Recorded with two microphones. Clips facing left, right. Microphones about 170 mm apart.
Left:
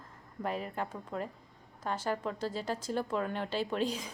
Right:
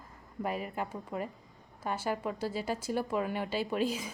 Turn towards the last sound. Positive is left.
turn(degrees=-5)  # may be behind; listen again after turning